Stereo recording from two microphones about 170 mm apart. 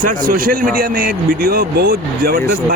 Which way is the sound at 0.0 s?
55° right (ahead or behind).